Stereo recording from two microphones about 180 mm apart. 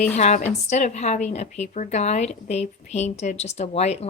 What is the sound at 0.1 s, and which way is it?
A woman's voice, 40° left (ahead or behind).